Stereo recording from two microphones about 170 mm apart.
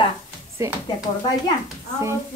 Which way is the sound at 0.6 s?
15° right (ahead or behind).